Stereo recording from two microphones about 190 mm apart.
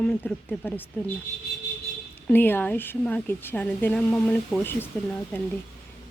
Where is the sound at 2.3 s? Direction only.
10° left (ahead or behind).